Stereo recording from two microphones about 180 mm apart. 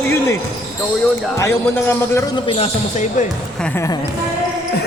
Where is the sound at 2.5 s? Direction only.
35° left (ahead or behind).